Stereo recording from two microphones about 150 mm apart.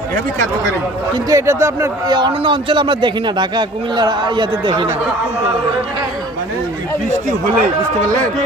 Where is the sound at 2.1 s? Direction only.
35° right (ahead or behind).